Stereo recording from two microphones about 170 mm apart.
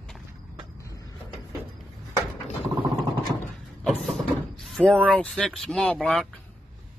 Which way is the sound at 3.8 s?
Centre (ahead or behind).